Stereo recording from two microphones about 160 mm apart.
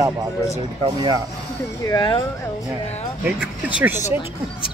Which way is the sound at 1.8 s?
25° left (ahead or behind).